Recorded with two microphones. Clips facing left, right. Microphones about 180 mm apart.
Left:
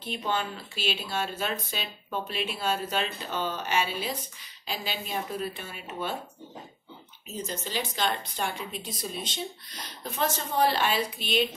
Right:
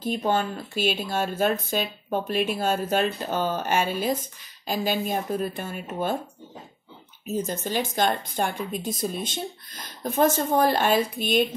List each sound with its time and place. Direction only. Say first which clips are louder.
0.0 s speech: right 6 dB; 45° right (ahead or behind)
7.2 s speech: right 8 dB; 50° right (ahead or behind)